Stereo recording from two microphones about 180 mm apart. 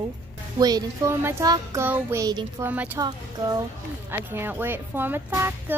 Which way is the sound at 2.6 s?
10° right (ahead or behind).